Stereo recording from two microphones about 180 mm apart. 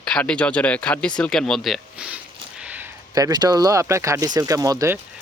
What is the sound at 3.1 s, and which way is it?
Speech, 20° right (ahead or behind).